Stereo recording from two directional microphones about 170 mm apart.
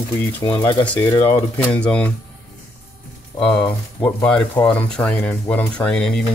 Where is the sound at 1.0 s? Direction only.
15° left (ahead or behind).